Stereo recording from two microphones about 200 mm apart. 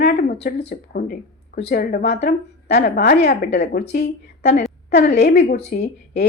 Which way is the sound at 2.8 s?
55° left (ahead or behind).